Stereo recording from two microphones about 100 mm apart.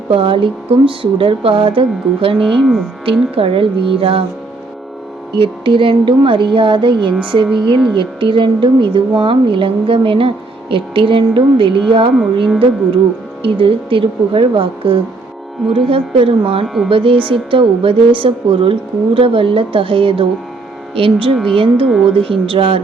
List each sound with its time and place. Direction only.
0.1 s a woman's voice: 60° right (ahead or behind)
2.4 s speech: centre (ahead or behind)
3.0 s speech: 65° right (ahead or behind)
5.3 s a woman's voice: 55° right (ahead or behind)
16.6 s speech: centre (ahead or behind)
16.9 s a woman's voice: 60° right (ahead or behind)